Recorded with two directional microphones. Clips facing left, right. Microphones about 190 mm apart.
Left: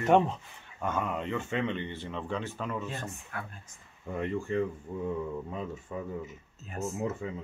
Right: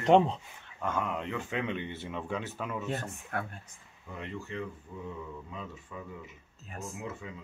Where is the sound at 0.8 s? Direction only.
5° left (ahead or behind).